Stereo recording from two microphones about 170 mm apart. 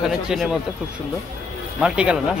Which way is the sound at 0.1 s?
Centre (ahead or behind).